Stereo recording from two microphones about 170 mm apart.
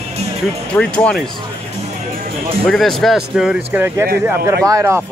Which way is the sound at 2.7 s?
Centre (ahead or behind).